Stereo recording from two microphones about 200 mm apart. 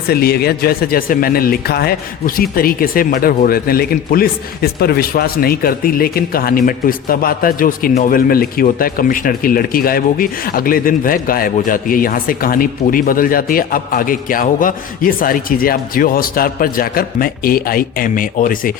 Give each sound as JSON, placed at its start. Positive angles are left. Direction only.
{"t": 0.1, "sound": "speech", "side_deg": 50}